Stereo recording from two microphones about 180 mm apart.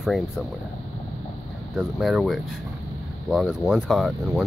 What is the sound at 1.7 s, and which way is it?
Speech, centre (ahead or behind).